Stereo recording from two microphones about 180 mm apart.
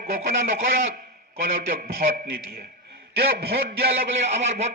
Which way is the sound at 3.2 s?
60° right (ahead or behind).